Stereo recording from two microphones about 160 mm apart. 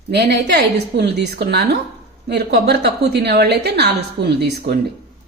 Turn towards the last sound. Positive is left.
turn(degrees=-90)